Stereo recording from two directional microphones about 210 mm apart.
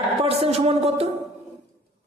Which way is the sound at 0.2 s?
30° right (ahead or behind).